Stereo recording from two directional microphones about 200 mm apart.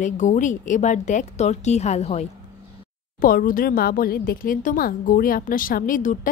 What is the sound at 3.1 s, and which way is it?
A woman's voice, 45° left (ahead or behind).